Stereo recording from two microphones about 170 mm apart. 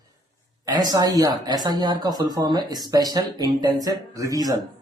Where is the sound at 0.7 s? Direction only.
25° right (ahead or behind).